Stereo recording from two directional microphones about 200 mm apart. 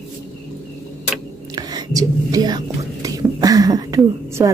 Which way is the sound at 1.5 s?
20° right (ahead or behind).